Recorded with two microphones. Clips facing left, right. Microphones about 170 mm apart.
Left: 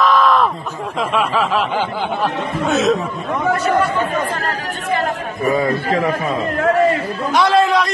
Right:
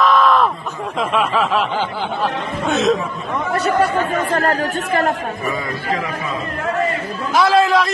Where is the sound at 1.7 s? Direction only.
15° left (ahead or behind).